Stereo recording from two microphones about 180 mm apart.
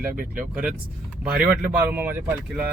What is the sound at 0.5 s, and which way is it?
Speech, 5° right (ahead or behind).